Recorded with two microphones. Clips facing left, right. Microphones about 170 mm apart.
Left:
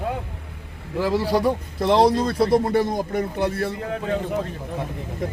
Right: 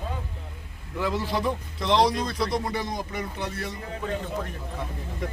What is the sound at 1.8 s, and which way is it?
Speech, 55° left (ahead or behind).